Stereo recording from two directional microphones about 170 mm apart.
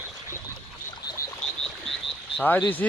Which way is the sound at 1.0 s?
20° left (ahead or behind).